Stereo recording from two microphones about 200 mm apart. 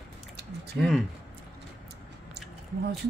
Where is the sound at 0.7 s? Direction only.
Centre (ahead or behind).